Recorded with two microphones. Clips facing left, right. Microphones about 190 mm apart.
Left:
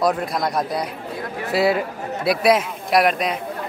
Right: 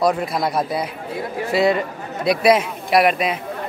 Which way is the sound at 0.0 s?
Centre (ahead or behind).